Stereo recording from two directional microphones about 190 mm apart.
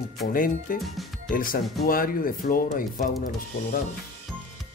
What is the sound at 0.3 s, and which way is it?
Speech, 50° left (ahead or behind).